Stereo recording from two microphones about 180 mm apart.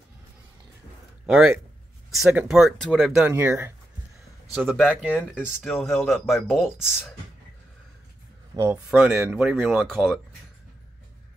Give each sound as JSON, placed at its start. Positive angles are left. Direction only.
{"t": 1.2, "sound": "a man's voice", "side_deg": 0}
{"t": 3.3, "sound": "speech", "side_deg": -15}
{"t": 4.6, "sound": "speech", "side_deg": 0}
{"t": 8.5, "sound": "speech", "side_deg": -20}
{"t": 8.9, "sound": "speech", "side_deg": -10}